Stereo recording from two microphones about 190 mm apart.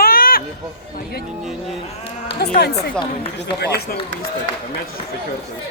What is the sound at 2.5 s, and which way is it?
Speech, 60° left (ahead or behind).